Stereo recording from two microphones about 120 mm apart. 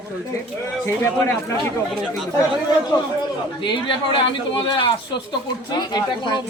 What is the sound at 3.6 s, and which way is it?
Speech, 40° left (ahead or behind).